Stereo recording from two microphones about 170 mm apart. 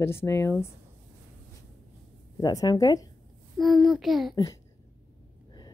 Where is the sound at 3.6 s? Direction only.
Centre (ahead or behind).